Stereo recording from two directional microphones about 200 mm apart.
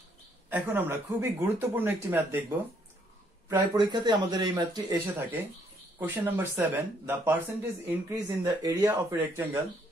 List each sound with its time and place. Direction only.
0.5 s speech: 10° right (ahead or behind)